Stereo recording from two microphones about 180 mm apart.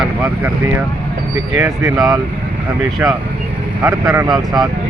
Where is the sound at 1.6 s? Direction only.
20° right (ahead or behind).